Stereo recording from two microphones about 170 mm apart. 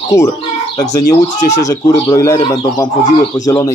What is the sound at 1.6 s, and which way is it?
Speech, 20° left (ahead or behind).